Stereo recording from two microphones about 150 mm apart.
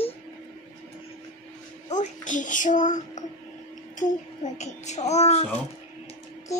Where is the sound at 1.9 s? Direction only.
55° left (ahead or behind).